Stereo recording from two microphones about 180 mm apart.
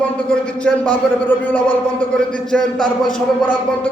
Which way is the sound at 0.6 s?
10° left (ahead or behind).